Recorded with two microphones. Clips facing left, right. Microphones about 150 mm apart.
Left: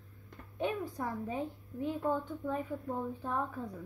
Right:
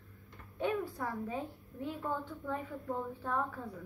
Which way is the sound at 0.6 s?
20° left (ahead or behind).